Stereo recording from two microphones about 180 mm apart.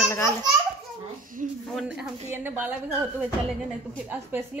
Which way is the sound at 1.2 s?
50° right (ahead or behind).